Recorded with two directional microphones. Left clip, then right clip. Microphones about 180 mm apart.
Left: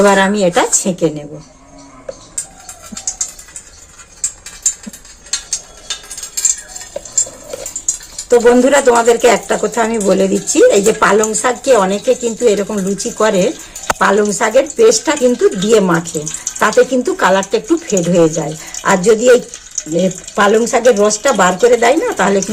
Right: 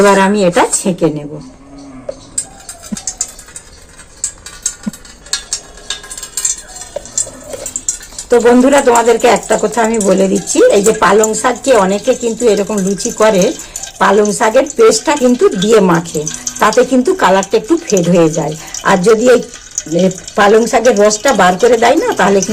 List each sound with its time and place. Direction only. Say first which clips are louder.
0.0 s speech: right 2 dB; 5° left (ahead or behind)
8.3 s speech: right 1 dB; 20° left (ahead or behind)